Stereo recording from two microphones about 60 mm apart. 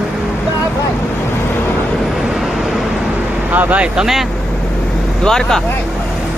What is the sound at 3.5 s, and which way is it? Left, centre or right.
Speech, right.